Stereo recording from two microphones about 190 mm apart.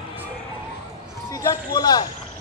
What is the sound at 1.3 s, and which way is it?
Speech, 20° left (ahead or behind).